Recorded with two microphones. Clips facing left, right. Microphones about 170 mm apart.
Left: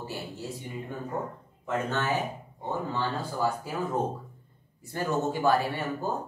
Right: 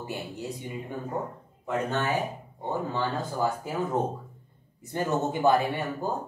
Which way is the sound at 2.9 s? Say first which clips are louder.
Right 1 dB; 20° right (ahead or behind).